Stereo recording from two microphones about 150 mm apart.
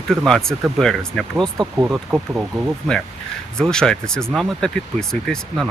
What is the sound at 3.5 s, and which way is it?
Speech, 5° left (ahead or behind).